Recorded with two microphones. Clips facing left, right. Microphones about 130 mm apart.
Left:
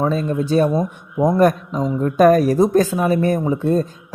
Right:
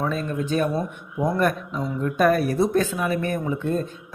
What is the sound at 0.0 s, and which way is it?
Speech, 30° left (ahead or behind).